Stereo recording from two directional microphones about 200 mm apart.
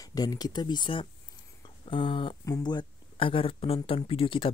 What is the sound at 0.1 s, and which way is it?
Speech, 20° left (ahead or behind).